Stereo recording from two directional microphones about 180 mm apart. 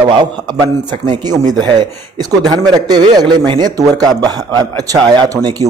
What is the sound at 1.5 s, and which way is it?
A man's voice, 25° right (ahead or behind).